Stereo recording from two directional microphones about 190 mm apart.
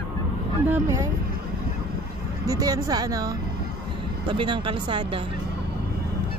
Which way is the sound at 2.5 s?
20° right (ahead or behind).